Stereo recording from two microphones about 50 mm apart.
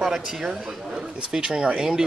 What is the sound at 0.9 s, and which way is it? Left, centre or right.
Speech, centre.